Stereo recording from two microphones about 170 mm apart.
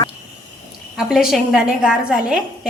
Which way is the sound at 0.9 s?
5° right (ahead or behind).